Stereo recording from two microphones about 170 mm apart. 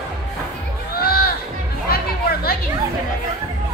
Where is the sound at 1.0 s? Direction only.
65° left (ahead or behind).